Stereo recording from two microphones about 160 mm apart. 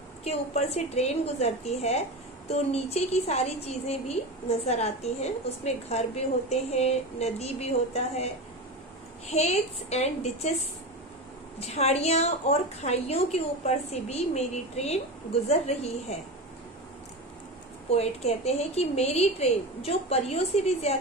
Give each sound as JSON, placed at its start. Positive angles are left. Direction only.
{"t": 0.2, "sound": "a woman's voice", "side_deg": 45}
{"t": 9.3, "sound": "a woman's voice", "side_deg": 40}
{"t": 11.6, "sound": "a woman's voice", "side_deg": 40}
{"t": 17.9, "sound": "a woman's voice", "side_deg": 40}